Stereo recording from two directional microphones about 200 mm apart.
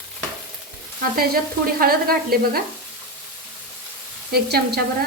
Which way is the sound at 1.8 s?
50° right (ahead or behind).